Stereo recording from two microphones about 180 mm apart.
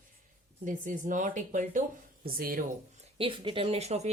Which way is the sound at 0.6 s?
45° right (ahead or behind).